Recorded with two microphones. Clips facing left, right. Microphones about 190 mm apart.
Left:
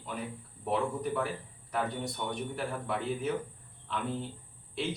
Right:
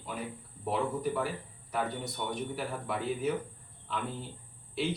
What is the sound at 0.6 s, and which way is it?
Speech, 5° right (ahead or behind).